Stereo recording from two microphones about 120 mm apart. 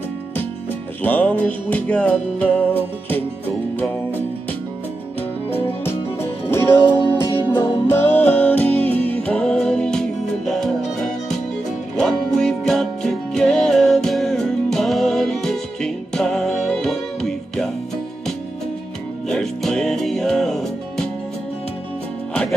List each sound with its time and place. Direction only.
1.0 s music: 10° left (ahead or behind)
5.5 s music: 55° left (ahead or behind)
5.9 s music: 20° left (ahead or behind); by 10.7 s 5° left (ahead or behind)
12.0 s music: 5° left (ahead or behind)
19.2 s music: 5° left (ahead or behind)